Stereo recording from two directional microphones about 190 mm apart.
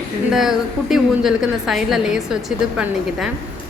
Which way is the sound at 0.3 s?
Centre (ahead or behind).